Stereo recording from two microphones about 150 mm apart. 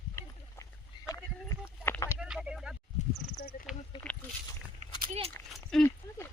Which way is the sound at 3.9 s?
30° left (ahead or behind).